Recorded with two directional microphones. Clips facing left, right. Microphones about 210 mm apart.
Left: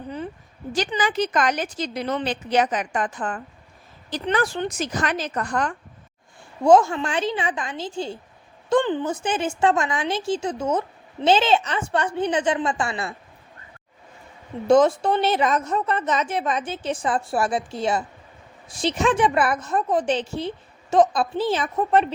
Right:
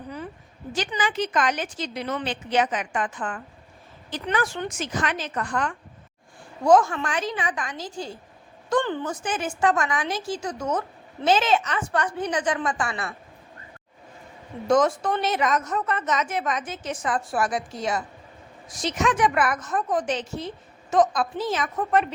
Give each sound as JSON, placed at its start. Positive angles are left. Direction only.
{"t": 0.9, "sound": "speech", "side_deg": 40}
{"t": 6.7, "sound": "a woman's voice", "side_deg": 25}
{"t": 14.7, "sound": "a woman's voice", "side_deg": 30}